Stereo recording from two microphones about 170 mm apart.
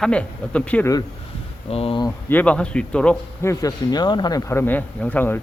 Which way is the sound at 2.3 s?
10° left (ahead or behind).